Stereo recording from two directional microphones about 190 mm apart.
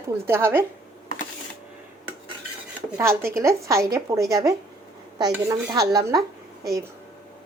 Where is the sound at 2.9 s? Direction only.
15° right (ahead or behind).